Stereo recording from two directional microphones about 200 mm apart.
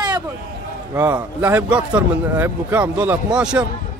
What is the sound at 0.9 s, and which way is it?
Speech, 10° right (ahead or behind).